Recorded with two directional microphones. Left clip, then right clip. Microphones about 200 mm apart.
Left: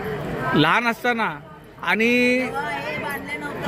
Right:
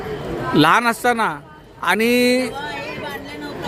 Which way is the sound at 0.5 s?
15° right (ahead or behind).